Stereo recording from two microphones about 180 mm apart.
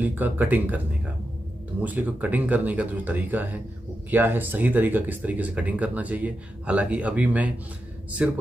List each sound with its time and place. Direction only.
0.0 s speech: 10° right (ahead or behind)